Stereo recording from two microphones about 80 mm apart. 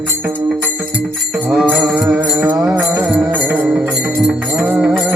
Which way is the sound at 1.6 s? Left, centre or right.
Right.